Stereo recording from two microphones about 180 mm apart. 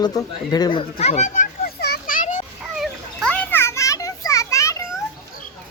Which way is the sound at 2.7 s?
Centre (ahead or behind).